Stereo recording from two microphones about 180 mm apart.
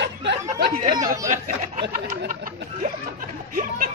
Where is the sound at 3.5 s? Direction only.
50° right (ahead or behind).